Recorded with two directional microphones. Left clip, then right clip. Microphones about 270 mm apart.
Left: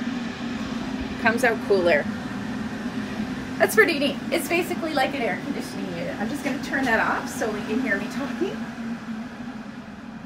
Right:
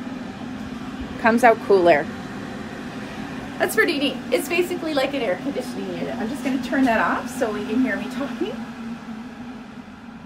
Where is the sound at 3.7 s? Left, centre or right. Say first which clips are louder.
Even; centre.